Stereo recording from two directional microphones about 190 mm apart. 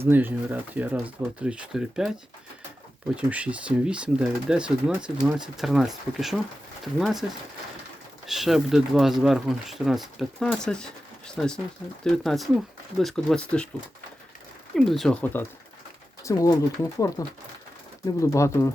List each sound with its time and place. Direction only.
0.1 s speech: 10° right (ahead or behind)
3.2 s speech: 5° right (ahead or behind)
8.3 s speech: centre (ahead or behind)
14.8 s speech: centre (ahead or behind)